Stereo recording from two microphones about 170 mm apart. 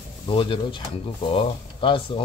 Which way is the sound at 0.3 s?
30° left (ahead or behind).